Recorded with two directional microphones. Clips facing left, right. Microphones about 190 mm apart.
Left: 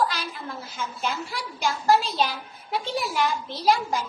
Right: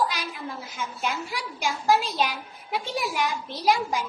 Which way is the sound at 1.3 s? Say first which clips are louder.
Left 1 dB; 15° right (ahead or behind).